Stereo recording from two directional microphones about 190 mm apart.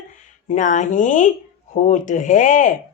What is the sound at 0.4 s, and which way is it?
Speech, 40° left (ahead or behind).